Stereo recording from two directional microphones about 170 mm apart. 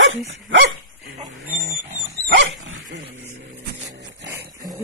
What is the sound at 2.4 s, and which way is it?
Dog, 90° right.